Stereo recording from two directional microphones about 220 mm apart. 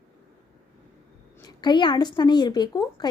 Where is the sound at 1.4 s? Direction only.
20° left (ahead or behind).